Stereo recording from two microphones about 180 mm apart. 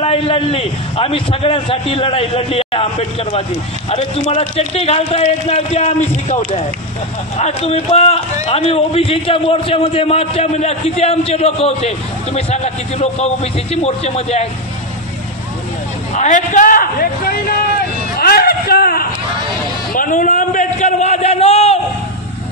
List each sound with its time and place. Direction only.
0.0 s a man's voice: 35° left (ahead or behind)
16.2 s a man's voice: 45° left (ahead or behind)
18.2 s a sound: 60° left (ahead or behind); by 21.7 s 35° left (ahead or behind)